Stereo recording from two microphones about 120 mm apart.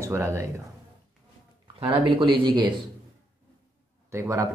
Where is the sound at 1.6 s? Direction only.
45° right (ahead or behind).